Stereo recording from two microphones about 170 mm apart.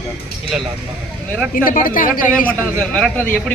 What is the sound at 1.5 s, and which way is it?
Speech, 55° left (ahead or behind).